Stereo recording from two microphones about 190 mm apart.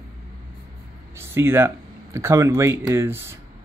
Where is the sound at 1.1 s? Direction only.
15° right (ahead or behind).